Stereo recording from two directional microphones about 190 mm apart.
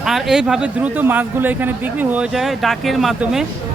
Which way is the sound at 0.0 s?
Centre (ahead or behind).